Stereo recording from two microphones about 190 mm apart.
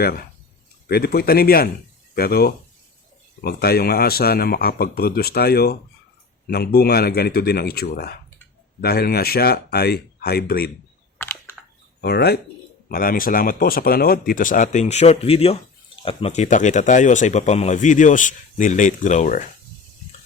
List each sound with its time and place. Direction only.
0.0 s speech: 55° left (ahead or behind)
11.2 s computer keyboard: 10° left (ahead or behind)
11.9 s speech: 60° left (ahead or behind); by 19.5 s 40° left (ahead or behind)